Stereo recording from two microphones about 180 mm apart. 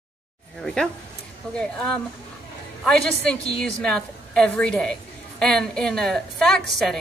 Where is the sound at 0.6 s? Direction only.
5° left (ahead or behind).